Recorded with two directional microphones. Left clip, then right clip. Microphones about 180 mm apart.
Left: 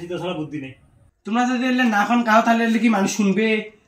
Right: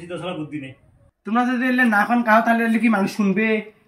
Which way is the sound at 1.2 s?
10° right (ahead or behind).